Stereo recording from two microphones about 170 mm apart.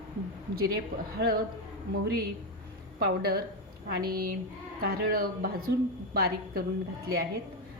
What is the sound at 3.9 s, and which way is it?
A woman's voice, 65° right (ahead or behind).